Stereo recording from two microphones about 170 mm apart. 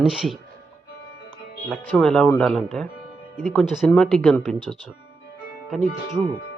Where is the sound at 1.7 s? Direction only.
5° left (ahead or behind).